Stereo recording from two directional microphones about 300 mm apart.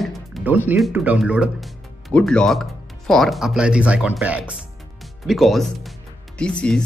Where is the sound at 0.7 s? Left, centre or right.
Centre.